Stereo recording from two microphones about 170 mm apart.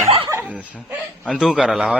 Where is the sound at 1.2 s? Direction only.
Centre (ahead or behind).